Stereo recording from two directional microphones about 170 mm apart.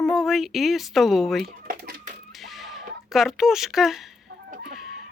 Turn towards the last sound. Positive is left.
turn(degrees=-55)  # may be behind; listen again after turning